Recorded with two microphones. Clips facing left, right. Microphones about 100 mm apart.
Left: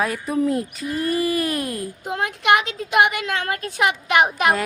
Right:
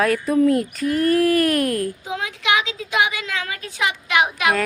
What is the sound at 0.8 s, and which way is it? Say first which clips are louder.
Speech: right 7 dB; 60° right (ahead or behind).